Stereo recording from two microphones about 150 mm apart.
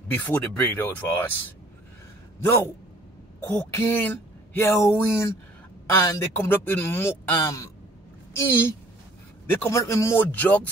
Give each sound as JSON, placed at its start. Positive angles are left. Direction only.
{"t": 0.1, "sound": "a man's voice", "side_deg": 10}
{"t": 3.7, "sound": "a man's voice", "side_deg": 15}